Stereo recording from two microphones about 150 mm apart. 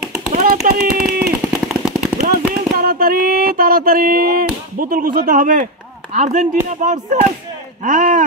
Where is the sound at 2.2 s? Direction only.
80° right.